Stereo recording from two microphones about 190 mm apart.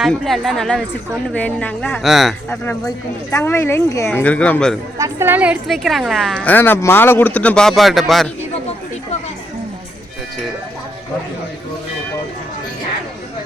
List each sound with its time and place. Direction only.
0.0 s a woman's voice: centre (ahead or behind)
3.3 s a woman's voice: 15° left (ahead or behind)
4.9 s a woman's voice: 15° right (ahead or behind)